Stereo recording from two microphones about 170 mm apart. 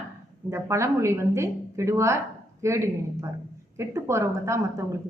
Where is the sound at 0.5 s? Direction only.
15° right (ahead or behind).